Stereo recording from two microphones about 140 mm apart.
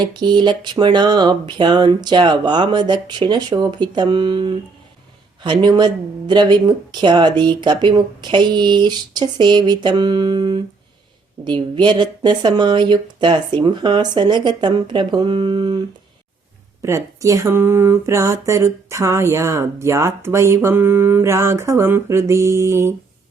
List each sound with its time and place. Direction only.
0.0 s speech: 30° right (ahead or behind)
16.8 s speech: 20° right (ahead or behind)